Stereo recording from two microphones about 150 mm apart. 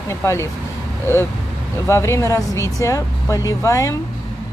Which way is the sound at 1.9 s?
20° left (ahead or behind).